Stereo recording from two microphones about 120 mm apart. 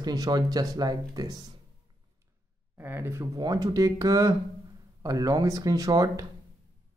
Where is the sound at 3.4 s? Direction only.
30° right (ahead or behind).